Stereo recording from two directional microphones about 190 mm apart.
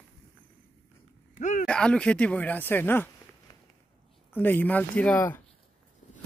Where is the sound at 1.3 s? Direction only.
40° left (ahead or behind).